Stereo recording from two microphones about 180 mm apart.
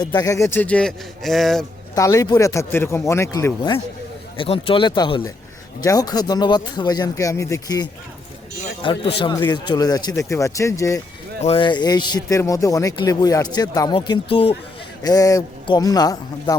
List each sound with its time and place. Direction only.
0.0 s speech: 20° left (ahead or behind); by 1.6 s centre (ahead or behind)
2.0 s a man's voice: 20° left (ahead or behind)
11.3 s a man's voice: 35° left (ahead or behind)